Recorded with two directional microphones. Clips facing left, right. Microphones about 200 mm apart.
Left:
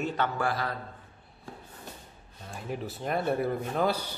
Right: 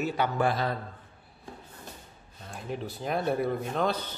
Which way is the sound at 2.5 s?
Centre (ahead or behind).